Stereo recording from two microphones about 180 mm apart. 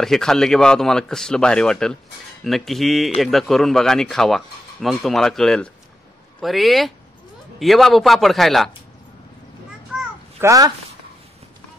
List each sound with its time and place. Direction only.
0.0 s speech: centre (ahead or behind)
10.4 s speech: 20° right (ahead or behind)